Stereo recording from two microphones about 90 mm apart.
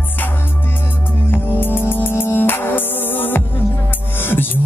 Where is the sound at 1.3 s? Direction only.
25° left (ahead or behind).